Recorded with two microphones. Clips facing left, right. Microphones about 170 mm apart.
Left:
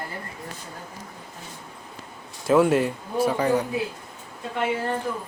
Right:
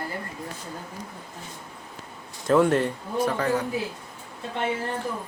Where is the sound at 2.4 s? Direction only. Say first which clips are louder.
Left 1 dB; 5° left (ahead or behind).